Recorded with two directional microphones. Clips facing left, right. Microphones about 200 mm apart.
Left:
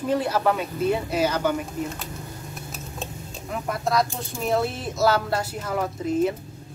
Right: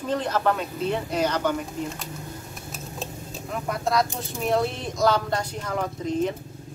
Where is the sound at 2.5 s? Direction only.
Centre (ahead or behind).